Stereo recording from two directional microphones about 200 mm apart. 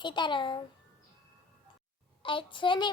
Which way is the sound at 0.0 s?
25° left (ahead or behind).